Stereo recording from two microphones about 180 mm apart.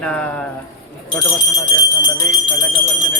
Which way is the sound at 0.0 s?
5° left (ahead or behind).